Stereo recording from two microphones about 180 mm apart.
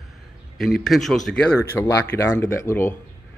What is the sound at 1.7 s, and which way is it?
Speech, 15° left (ahead or behind).